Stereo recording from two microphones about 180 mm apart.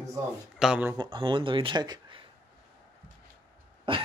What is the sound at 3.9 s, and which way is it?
Dog, 30° right (ahead or behind).